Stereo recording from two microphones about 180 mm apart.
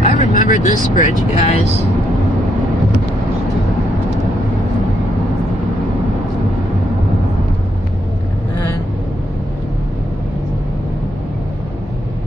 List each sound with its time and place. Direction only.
0.0 s speech: 40° left (ahead or behind)